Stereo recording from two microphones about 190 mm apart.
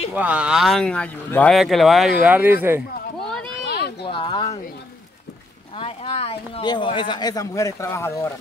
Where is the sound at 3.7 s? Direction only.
60° left (ahead or behind).